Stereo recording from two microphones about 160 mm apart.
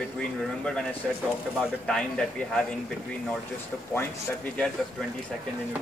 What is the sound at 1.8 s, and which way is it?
Speech, 5° left (ahead or behind).